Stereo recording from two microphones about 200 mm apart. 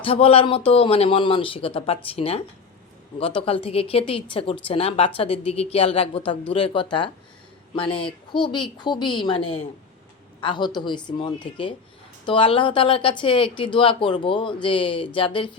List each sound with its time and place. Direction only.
0.0 s speech: 30° left (ahead or behind)